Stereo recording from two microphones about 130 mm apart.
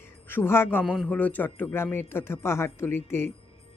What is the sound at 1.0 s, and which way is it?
Speech, 10° left (ahead or behind).